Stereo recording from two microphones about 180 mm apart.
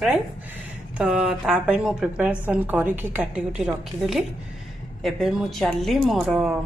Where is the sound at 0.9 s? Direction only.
5° right (ahead or behind).